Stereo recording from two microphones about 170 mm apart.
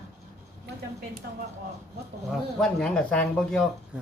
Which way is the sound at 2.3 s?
5° left (ahead or behind).